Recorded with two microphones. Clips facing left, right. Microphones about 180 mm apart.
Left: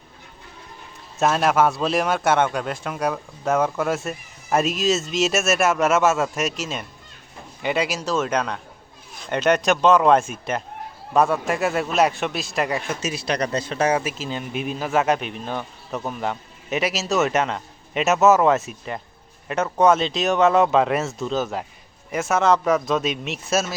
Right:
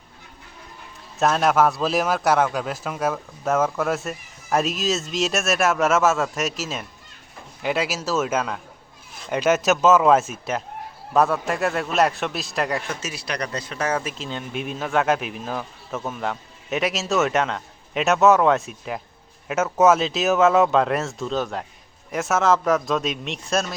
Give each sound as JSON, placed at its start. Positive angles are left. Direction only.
{"t": 1.2, "sound": "a man's voice", "side_deg": 0}
{"t": 13.0, "sound": "speech", "side_deg": 20}
{"t": 14.0, "sound": "a man's voice", "side_deg": 5}